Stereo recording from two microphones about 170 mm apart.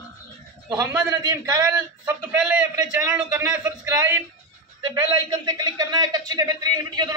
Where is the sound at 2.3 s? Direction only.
5° right (ahead or behind).